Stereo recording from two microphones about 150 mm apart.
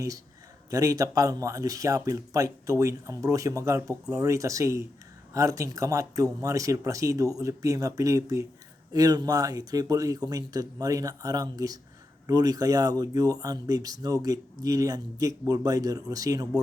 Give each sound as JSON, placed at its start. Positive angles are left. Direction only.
{"t": 0.7, "sound": "speech", "side_deg": -20}